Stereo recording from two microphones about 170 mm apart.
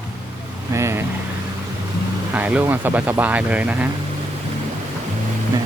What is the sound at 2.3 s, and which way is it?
Speech, 10° right (ahead or behind).